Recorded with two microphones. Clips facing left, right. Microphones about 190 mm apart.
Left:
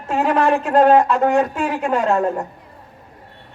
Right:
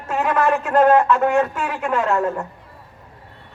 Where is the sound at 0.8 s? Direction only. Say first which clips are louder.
Left 1 dB; 15° left (ahead or behind).